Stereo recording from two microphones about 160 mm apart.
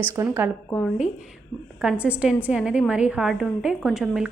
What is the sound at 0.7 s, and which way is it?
Speech, 10° left (ahead or behind).